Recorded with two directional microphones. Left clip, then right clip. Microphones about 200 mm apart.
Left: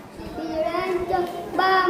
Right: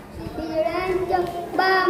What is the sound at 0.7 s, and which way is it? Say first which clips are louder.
Child singing: right 1 dB; 10° left (ahead or behind).